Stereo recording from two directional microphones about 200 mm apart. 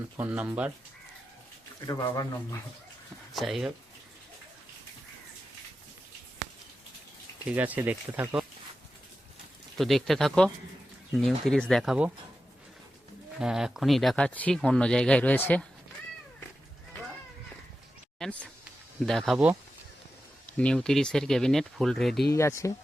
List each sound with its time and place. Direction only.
0.2 s speech: 10° right (ahead or behind)
1.9 s speech: 20° left (ahead or behind)
3.3 s speech: centre (ahead or behind)
7.5 s speech: 10° right (ahead or behind)
9.7 s speech: centre (ahead or behind)
13.4 s speech: 5° right (ahead or behind)
18.2 s speech: 5° left (ahead or behind)
20.6 s speech: 5° left (ahead or behind)
22.3 s speech: 15° left (ahead or behind)